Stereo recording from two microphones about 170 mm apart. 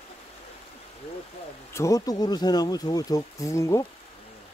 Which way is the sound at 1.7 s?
20° left (ahead or behind).